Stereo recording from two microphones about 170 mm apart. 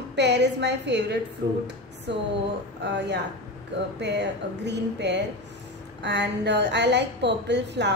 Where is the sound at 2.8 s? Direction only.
90° right.